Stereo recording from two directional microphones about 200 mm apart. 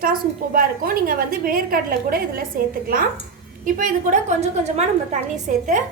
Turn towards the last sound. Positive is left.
turn(degrees=-40)  # may be behind; listen again after turning